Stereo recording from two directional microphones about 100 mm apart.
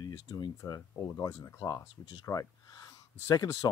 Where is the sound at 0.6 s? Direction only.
35° left (ahead or behind).